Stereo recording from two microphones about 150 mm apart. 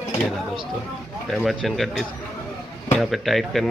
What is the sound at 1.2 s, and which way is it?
A man's voice, centre (ahead or behind).